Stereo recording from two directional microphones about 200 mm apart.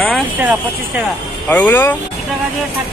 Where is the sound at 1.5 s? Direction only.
10° left (ahead or behind).